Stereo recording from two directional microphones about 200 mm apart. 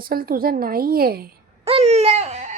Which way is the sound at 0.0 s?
45° right (ahead or behind).